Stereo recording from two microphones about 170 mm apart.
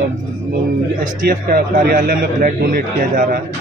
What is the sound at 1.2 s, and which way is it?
A man's voice, 60° right (ahead or behind).